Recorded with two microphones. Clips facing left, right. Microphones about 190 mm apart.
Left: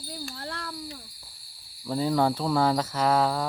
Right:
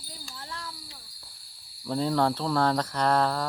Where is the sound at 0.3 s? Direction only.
60° left (ahead or behind).